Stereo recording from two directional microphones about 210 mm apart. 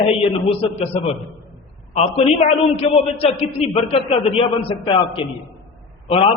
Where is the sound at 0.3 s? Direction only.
25° left (ahead or behind).